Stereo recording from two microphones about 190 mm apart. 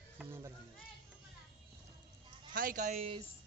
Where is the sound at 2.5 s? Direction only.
45° right (ahead or behind).